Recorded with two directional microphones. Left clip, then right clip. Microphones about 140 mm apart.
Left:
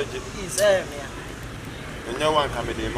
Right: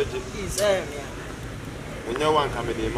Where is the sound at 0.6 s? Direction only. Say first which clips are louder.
Left 3 dB; centre (ahead or behind).